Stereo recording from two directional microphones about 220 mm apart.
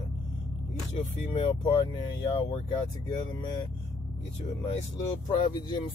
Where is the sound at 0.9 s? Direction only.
25° left (ahead or behind).